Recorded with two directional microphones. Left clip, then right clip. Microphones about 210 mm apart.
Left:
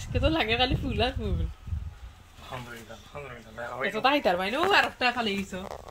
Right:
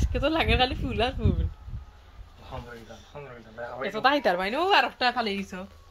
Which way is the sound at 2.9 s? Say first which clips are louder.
Left 1 dB; 15° left (ahead or behind).